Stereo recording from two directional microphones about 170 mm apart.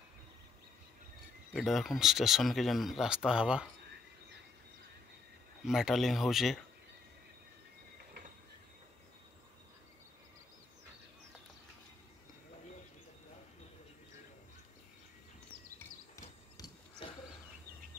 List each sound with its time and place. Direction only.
1.5 s speech: centre (ahead or behind)
5.7 s speech: centre (ahead or behind)
16.2 s a sound: 25° left (ahead or behind)